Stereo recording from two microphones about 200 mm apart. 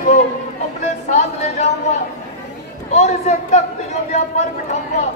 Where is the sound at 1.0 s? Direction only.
35° left (ahead or behind).